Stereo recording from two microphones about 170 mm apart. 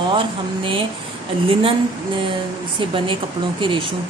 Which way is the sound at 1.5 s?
35° right (ahead or behind).